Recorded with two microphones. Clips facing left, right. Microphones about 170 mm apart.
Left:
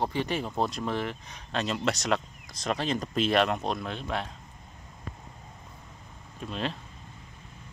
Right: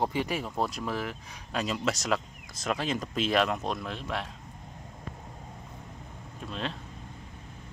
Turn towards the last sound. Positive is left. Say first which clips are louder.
# left 2 dB
turn(degrees=0)  # may be behind; listen again after turning